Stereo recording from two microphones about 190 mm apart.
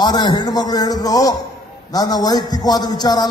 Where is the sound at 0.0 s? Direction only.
25° left (ahead or behind).